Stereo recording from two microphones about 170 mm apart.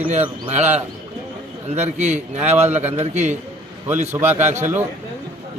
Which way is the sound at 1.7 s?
45° right (ahead or behind).